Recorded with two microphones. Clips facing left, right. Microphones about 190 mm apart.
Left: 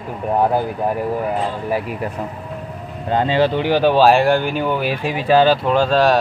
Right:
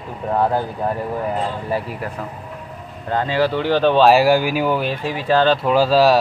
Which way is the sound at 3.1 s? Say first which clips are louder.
Left 2 dB; 20° left (ahead or behind).